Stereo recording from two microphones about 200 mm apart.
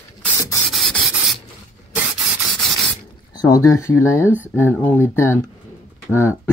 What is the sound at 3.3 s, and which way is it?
Speech, 20° left (ahead or behind).